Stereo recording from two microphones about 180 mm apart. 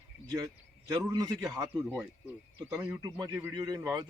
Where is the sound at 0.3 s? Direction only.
20° right (ahead or behind).